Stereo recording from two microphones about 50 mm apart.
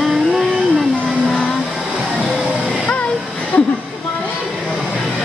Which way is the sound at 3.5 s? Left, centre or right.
Left.